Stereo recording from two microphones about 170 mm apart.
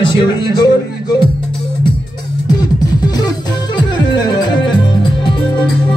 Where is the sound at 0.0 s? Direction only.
25° left (ahead or behind).